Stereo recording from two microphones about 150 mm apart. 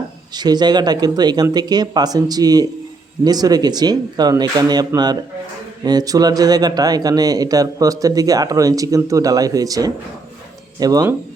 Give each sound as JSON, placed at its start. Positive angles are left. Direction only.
{"t": 0.3, "sound": "speech", "side_deg": -30}